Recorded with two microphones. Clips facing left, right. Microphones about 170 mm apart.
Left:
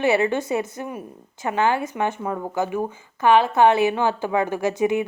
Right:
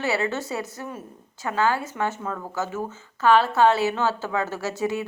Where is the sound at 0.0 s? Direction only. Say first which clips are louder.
Left 6 dB; 20° left (ahead or behind).